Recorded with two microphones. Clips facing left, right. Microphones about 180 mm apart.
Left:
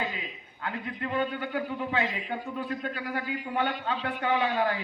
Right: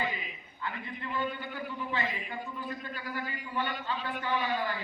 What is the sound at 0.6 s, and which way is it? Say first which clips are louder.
A man's voice: left 5 dB; 65° left (ahead or behind).